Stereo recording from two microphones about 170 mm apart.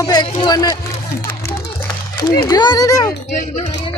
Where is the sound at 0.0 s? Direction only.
25° left (ahead or behind).